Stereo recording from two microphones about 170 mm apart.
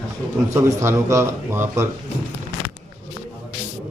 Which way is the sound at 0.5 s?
15° right (ahead or behind).